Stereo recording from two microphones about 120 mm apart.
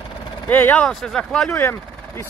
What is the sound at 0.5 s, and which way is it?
Speech, 15° left (ahead or behind).